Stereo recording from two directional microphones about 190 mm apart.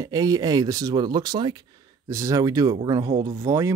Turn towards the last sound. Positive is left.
turn(degrees=-15)  # may be behind; listen again after turning